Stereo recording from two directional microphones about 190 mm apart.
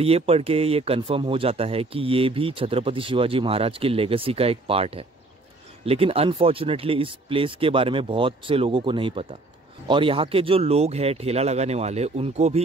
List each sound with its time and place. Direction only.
0.0 s speech: 30° right (ahead or behind)